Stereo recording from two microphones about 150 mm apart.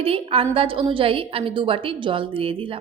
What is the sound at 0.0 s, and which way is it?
A woman's voice, 40° right (ahead or behind).